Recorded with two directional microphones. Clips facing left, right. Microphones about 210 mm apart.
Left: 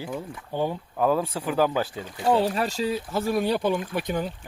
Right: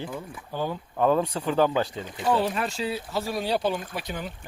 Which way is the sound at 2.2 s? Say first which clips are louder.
Left 2 dB; 30° left (ahead or behind).